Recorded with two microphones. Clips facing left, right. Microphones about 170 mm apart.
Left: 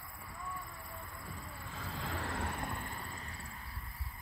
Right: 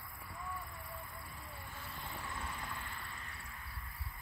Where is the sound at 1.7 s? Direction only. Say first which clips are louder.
Left 8 dB; 90° left; by 3.5 s 35° left (ahead or behind).